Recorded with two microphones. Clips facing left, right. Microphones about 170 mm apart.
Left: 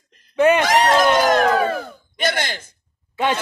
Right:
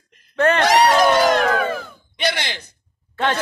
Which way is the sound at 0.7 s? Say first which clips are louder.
Right 1 dB; 50° left (ahead or behind).